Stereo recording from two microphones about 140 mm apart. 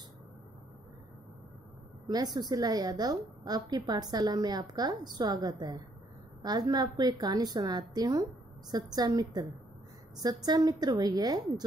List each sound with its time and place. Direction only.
2.3 s a woman's voice: 30° right (ahead or behind)